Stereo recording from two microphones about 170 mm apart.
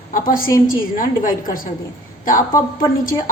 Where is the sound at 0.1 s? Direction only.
55° left (ahead or behind).